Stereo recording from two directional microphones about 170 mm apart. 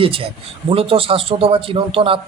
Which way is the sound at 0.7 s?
35° right (ahead or behind).